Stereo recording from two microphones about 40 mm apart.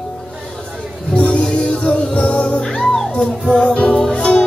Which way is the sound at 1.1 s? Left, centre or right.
Left.